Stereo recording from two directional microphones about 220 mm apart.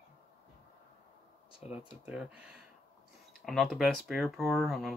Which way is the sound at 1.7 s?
5° right (ahead or behind).